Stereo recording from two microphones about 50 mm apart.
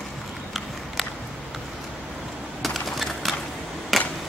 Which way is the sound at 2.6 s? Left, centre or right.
Centre.